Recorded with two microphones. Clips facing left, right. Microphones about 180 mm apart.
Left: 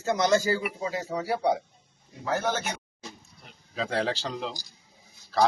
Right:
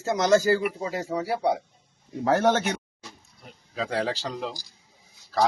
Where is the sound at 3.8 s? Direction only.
5° right (ahead or behind).